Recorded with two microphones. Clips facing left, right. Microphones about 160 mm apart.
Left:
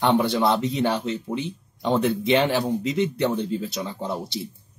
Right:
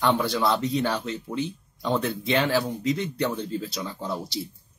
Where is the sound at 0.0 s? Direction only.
25° left (ahead or behind).